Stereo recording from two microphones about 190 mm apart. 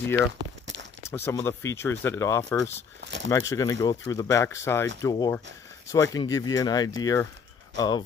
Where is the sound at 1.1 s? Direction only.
15° left (ahead or behind).